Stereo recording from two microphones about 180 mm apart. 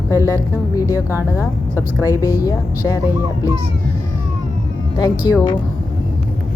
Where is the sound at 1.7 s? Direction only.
15° left (ahead or behind).